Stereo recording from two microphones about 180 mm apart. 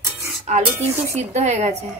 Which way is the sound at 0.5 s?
40° right (ahead or behind).